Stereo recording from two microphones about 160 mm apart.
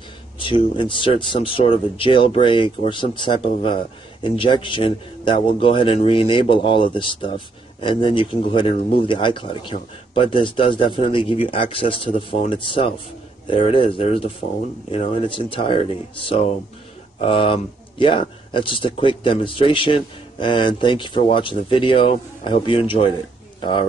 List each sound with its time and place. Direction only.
0.4 s speech: 30° left (ahead or behind)